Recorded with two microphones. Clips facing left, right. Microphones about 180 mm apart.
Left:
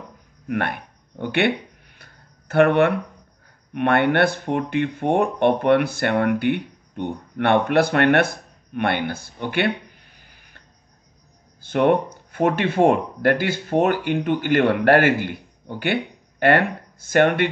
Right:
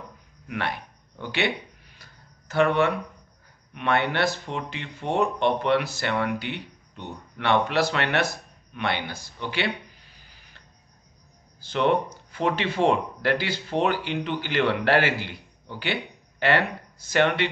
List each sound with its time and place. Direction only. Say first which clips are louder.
0.5 s a sound: left 5 dB; 50° left (ahead or behind)
3.7 s speech: left 6 dB; 55° left (ahead or behind)
11.6 s speech: left 5 dB; 55° left (ahead or behind)